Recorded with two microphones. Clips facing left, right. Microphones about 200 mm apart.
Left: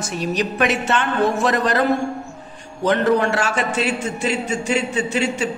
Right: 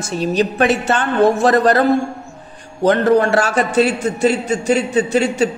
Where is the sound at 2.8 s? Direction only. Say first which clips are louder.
Right 4 dB; 35° right (ahead or behind).